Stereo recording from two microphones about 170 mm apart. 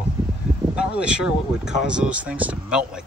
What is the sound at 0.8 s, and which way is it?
Speech, 5° right (ahead or behind).